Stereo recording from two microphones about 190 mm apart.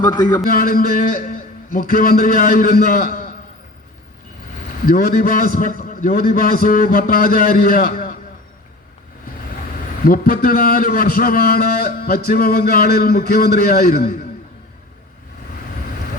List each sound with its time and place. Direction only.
0.0 s a man's voice: 20° left (ahead or behind)
0.4 s a man's voice: 50° left (ahead or behind)
4.9 s a man's voice: 50° left (ahead or behind)
10.0 s a man's voice: 50° left (ahead or behind)